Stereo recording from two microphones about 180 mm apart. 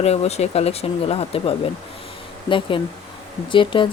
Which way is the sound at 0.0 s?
35° left (ahead or behind).